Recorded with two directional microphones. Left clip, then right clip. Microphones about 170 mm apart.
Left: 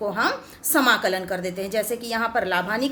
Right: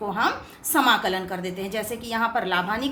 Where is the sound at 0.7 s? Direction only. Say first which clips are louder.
Left 1 dB; 50° left (ahead or behind).